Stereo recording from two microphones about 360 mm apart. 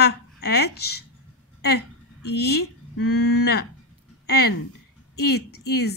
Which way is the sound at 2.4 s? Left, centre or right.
Left.